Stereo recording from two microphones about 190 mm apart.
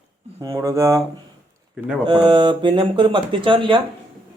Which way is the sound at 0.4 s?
15° right (ahead or behind).